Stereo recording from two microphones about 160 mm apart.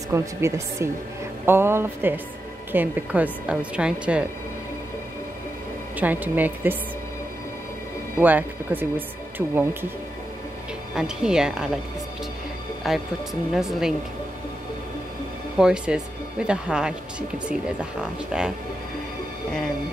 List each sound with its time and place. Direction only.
0.1 s a woman's voice: 15° right (ahead or behind)
5.9 s a woman's voice: 10° right (ahead or behind)
8.2 s a woman's voice: 10° right (ahead or behind)
11.0 s speech: 5° right (ahead or behind)
12.8 s speech: centre (ahead or behind)
15.5 s speech: 5° right (ahead or behind)
18.3 s speech: 5° right (ahead or behind)